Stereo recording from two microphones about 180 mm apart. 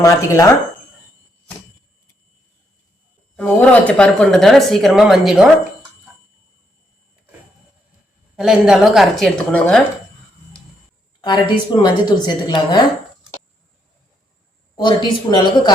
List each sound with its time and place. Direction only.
0.0 s speech: 15° left (ahead or behind)
3.3 s speech: 10° left (ahead or behind)
8.4 s speech: 5° right (ahead or behind)
11.2 s a woman's voice: 25° left (ahead or behind)
14.8 s a woman's voice: 25° left (ahead or behind)